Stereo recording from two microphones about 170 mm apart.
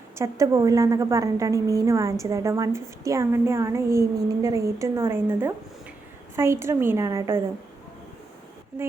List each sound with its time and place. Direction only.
0.2 s a woman's voice: 15° right (ahead or behind)